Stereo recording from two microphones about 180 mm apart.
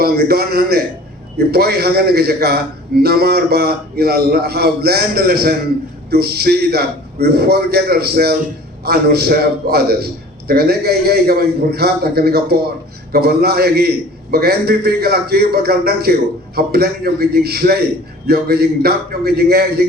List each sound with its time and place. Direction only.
0.0 s a man's voice: 60° right (ahead or behind)